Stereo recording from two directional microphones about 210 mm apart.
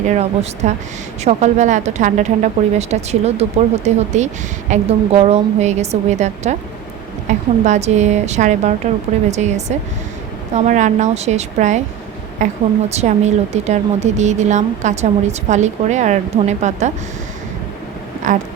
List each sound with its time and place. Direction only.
0.1 s speech: 35° right (ahead or behind)
12.9 s speech: 30° right (ahead or behind)
18.3 s a sound: 35° right (ahead or behind)